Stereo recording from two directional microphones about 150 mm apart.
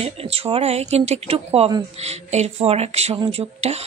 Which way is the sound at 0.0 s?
40° right (ahead or behind).